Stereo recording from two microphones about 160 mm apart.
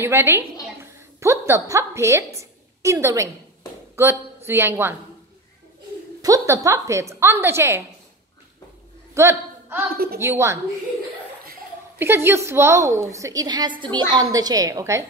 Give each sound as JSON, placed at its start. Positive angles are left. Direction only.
{"t": 0.0, "sound": "a woman's voice", "side_deg": -15}
{"t": 6.2, "sound": "a woman's voice", "side_deg": -20}
{"t": 9.1, "sound": "a man's voice", "side_deg": -15}
{"t": 12.0, "sound": "a woman's voice", "side_deg": -15}